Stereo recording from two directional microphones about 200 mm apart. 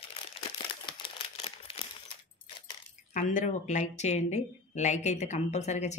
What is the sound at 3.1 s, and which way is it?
Speech, 40° left (ahead or behind).